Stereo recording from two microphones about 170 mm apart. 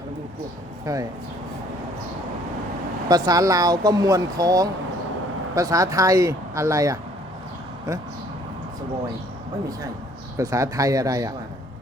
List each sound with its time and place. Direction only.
0.9 s speech: 20° right (ahead or behind)
3.1 s speech: 25° right (ahead or behind)
10.3 s speech: 20° right (ahead or behind)